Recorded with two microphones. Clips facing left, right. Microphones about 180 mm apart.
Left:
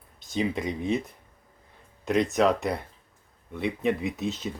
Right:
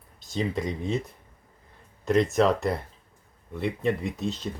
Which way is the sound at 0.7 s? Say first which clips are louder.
Left 2 dB; 20° left (ahead or behind).